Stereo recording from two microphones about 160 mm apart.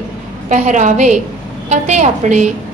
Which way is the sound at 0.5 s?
50° right (ahead or behind).